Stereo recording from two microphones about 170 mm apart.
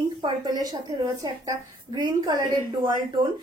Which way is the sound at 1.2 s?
25° right (ahead or behind).